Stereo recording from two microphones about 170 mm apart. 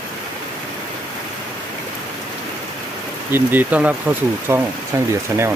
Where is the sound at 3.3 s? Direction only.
10° right (ahead or behind).